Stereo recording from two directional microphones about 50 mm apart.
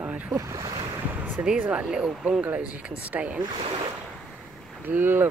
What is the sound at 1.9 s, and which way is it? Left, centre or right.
Speech, right.